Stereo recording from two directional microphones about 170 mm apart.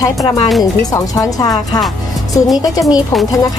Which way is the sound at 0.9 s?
20° left (ahead or behind).